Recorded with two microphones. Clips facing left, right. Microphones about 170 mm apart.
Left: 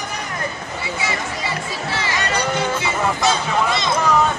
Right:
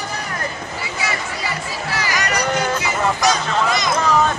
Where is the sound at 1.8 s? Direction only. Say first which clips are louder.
Right 1 dB; 25° left (ahead or behind).